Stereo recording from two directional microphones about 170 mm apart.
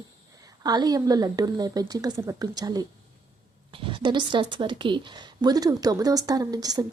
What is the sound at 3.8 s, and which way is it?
A woman's voice, 30° right (ahead or behind).